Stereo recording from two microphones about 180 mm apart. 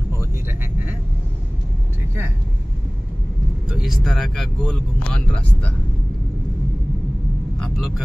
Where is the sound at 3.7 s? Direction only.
Centre (ahead or behind).